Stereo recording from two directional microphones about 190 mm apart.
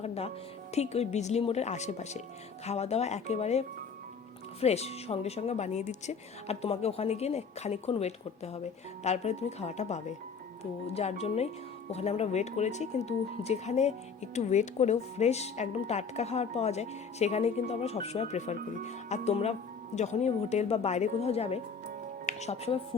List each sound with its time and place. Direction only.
0.0 s music: 35° left (ahead or behind)
0.7 s speech: 35° left (ahead or behind)
4.6 s speech: 35° left (ahead or behind)